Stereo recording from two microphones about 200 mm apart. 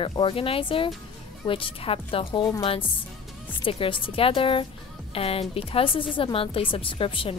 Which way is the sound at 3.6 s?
25° left (ahead or behind).